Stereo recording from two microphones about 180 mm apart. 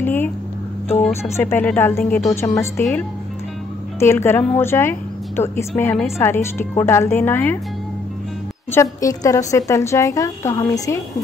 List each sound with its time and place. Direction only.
0.0 s speech: 10° left (ahead or behind)
1.3 s a woman's voice: 10° left (ahead or behind)
9.0 s a woman's voice: 20° left (ahead or behind)